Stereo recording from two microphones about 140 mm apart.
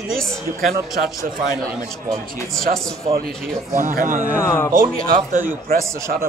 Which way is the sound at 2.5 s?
5° left (ahead or behind).